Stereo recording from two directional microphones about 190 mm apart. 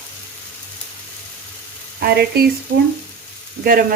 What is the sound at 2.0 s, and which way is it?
Frying, 55° right (ahead or behind).